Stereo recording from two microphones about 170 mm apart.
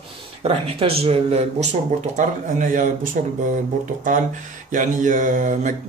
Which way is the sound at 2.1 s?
50° right (ahead or behind).